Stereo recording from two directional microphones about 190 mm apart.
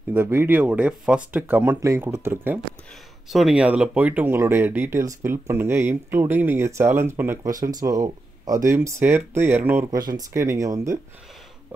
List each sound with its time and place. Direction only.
0.1 s speech: 10° right (ahead or behind)
9.8 s speech: 20° right (ahead or behind)